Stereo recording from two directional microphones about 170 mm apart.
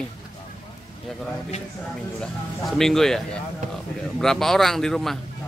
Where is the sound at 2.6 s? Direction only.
Centre (ahead or behind).